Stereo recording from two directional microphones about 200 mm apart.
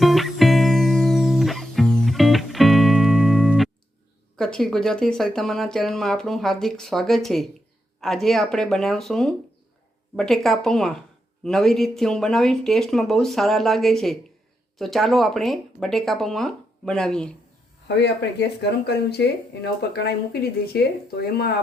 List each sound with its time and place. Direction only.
0.0 s music: centre (ahead or behind)
4.4 s speech: 5° left (ahead or behind)
17.8 s speech: 60° left (ahead or behind)